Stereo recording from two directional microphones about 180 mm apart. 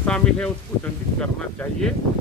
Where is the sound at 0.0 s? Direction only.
5° left (ahead or behind).